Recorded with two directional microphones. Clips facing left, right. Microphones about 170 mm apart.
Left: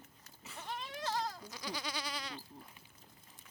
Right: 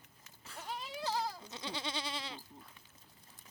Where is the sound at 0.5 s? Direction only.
10° right (ahead or behind).